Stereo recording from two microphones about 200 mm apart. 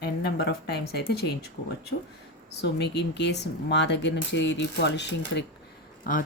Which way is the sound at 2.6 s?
55° left (ahead or behind).